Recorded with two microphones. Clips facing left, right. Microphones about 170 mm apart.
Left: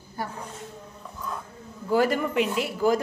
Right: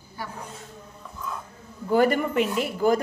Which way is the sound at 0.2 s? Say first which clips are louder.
Left 3 dB; 45° left (ahead or behind).